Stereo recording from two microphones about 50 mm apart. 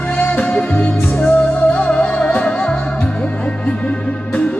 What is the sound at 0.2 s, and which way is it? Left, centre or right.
Music, left.